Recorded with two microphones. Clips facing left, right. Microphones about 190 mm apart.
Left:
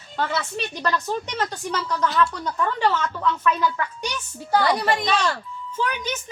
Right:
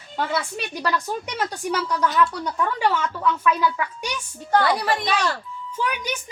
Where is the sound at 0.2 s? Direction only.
10° right (ahead or behind).